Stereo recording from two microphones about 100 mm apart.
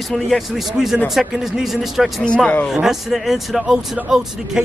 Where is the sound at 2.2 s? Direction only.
10° left (ahead or behind).